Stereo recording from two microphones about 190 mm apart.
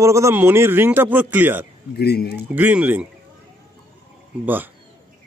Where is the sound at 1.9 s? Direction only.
55° left (ahead or behind).